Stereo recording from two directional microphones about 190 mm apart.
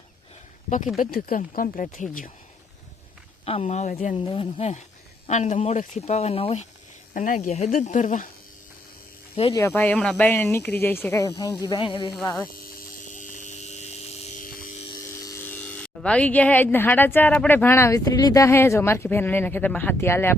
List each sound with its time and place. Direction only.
0.9 s speech: 50° left (ahead or behind)
3.4 s speech: 30° left (ahead or behind)
4.1 s speech: 25° left (ahead or behind)
7.1 s speech: 45° left (ahead or behind)
9.5 s speech: 15° left (ahead or behind)
13.1 s a sound: 40° left (ahead or behind)
15.0 s speech: 15° left (ahead or behind)